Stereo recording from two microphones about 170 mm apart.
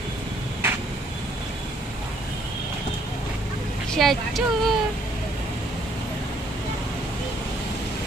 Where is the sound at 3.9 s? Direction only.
Centre (ahead or behind).